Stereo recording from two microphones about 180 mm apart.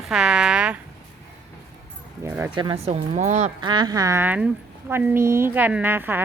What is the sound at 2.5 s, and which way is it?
Speech, 30° right (ahead or behind).